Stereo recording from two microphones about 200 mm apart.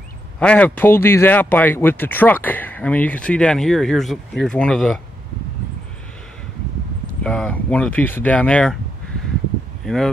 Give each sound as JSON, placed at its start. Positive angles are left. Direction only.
{"t": 0.4, "sound": "speech", "side_deg": 5}
{"t": 7.2, "sound": "speech", "side_deg": 5}
{"t": 9.8, "sound": "speech", "side_deg": 0}